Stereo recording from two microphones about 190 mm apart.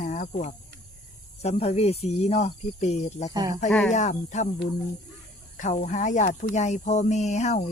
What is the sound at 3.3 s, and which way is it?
Speech, 20° right (ahead or behind).